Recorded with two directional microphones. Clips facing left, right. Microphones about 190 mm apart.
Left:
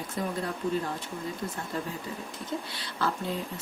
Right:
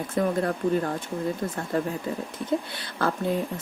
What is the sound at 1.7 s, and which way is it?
Speech, 55° right (ahead or behind).